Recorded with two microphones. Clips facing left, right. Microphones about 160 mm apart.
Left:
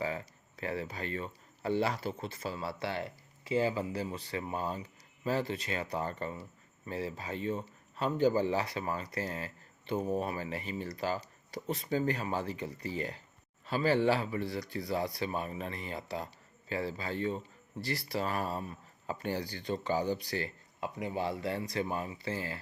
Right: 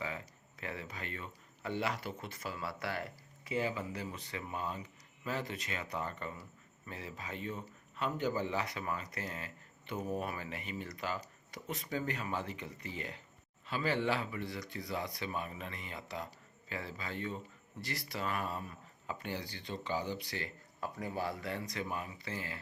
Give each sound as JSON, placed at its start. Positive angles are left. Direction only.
{"t": 0.0, "sound": "a man's voice", "side_deg": 35}
{"t": 20.8, "sound": "a man's voice", "side_deg": 25}